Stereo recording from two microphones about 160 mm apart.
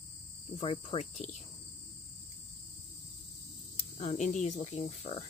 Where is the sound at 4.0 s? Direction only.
50° left (ahead or behind).